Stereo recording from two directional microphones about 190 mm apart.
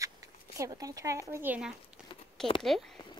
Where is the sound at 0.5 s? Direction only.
15° right (ahead or behind); by 2.9 s centre (ahead or behind).